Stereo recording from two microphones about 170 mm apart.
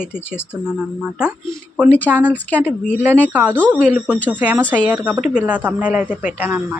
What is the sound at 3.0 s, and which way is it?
A woman's voice, 10° right (ahead or behind).